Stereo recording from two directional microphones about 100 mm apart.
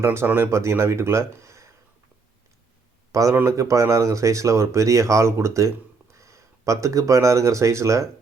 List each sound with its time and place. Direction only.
0.0 s speech: 25° right (ahead or behind)
3.1 s a man's voice: 35° right (ahead or behind)